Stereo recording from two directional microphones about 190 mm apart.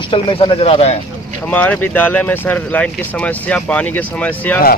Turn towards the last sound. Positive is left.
turn(degrees=10)  # may be behind; listen again after turning